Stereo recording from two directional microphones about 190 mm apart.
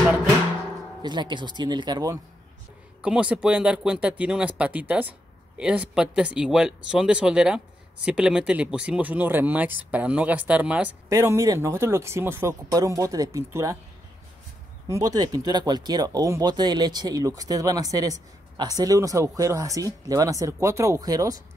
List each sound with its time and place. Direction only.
1.0 s speech: 25° right (ahead or behind)
3.0 s speech: 5° right (ahead or behind)
14.9 s speech: 20° right (ahead or behind)